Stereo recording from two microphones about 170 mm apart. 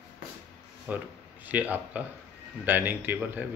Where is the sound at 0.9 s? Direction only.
10° right (ahead or behind).